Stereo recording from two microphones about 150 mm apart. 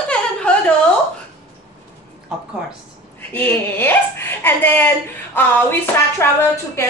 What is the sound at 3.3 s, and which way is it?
A woman's voice, 10° left (ahead or behind).